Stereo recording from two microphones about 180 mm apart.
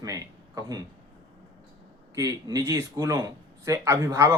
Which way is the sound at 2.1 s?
20° right (ahead or behind).